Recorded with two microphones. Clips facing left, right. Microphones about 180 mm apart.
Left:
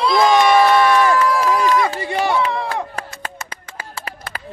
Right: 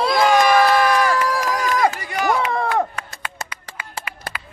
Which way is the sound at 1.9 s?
30° left (ahead or behind).